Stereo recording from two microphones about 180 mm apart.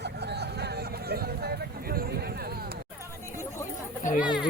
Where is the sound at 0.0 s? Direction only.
65° right (ahead or behind).